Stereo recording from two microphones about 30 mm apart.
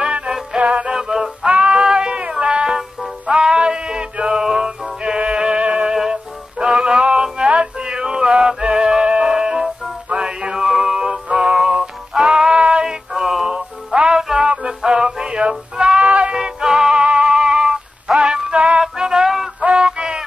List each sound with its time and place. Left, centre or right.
0.6 s music: right
0.8 s music: centre
3.3 s male singing: right
6.6 s music: right
13.5 s music: right
16.0 s a sound: right
16.3 s music: centre
17.0 s synthetic singing: right
18.8 s music: right
19.6 s music: right